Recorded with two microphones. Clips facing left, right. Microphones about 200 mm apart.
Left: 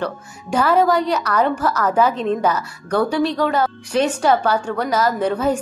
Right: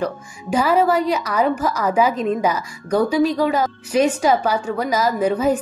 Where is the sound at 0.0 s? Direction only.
10° right (ahead or behind).